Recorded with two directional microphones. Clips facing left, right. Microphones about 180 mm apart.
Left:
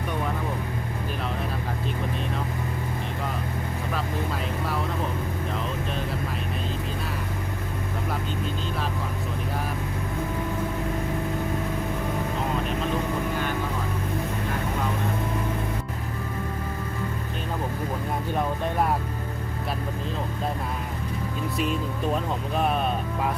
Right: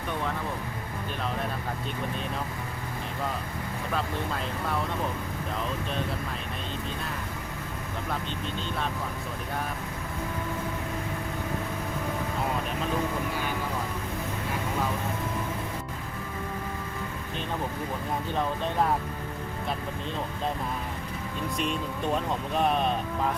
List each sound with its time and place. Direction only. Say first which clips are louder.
18.3 s speech: left 2 dB; 10° left (ahead or behind)
21.6 s speech: left 3 dB; 5° left (ahead or behind)